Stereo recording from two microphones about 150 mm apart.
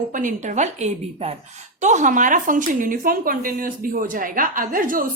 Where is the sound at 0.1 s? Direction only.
60° right (ahead or behind).